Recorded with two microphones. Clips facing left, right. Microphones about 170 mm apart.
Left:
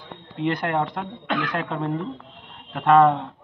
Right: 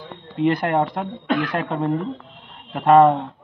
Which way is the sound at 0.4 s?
5° right (ahead or behind).